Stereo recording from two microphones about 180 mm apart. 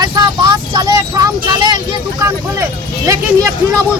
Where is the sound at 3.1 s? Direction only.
20° right (ahead or behind).